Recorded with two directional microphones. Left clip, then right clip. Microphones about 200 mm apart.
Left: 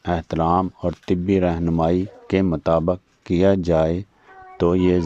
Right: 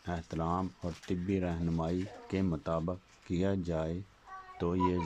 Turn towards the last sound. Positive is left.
turn(degrees=45)  # may be behind; listen again after turning